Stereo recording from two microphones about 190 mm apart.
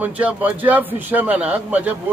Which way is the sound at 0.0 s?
5° right (ahead or behind).